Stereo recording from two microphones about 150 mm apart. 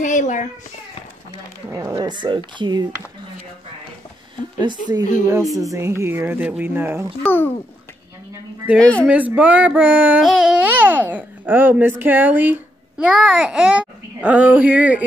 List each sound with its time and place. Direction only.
0.0 s a child's voice: 55° left (ahead or behind)
1.7 s speech: 20° right (ahead or behind)
5.1 s a child's voice: 20° right (ahead or behind)
7.2 s a child's voice: 10° left (ahead or behind)
8.7 s speech: 5° left (ahead or behind)
9.1 s a child's voice: 10° right (ahead or behind)